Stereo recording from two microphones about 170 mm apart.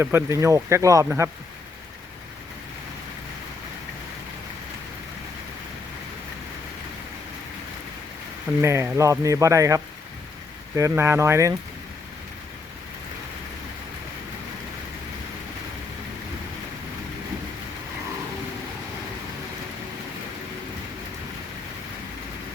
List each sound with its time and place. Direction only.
0.0 s speech: 15° right (ahead or behind)
8.6 s speech: 15° right (ahead or behind)